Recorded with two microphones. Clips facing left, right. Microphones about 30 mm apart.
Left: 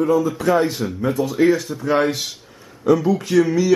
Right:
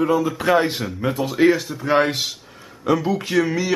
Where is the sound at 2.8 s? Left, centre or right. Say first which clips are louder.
Left 3 dB; right.